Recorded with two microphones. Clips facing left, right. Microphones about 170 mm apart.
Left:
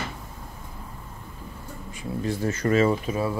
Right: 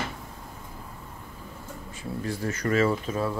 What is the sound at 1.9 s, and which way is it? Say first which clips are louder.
Speech: left 4 dB; 20° left (ahead or behind).